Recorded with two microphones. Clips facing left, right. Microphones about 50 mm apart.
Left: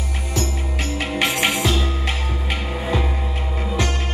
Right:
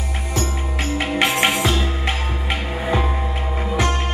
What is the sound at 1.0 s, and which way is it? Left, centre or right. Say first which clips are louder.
Music: right 2 dB; centre.